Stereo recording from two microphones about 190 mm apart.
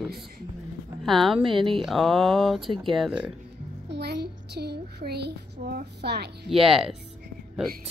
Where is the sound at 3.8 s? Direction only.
60° right (ahead or behind).